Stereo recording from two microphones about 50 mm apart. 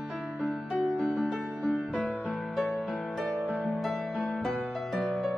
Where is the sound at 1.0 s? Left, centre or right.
Centre.